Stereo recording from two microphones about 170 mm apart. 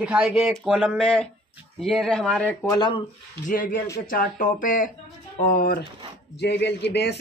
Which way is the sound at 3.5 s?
55° left (ahead or behind).